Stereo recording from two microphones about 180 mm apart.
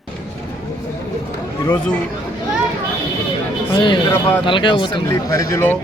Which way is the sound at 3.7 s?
30° left (ahead or behind).